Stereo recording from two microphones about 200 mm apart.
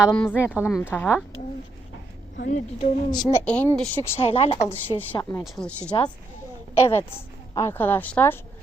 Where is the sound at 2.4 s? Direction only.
40° left (ahead or behind).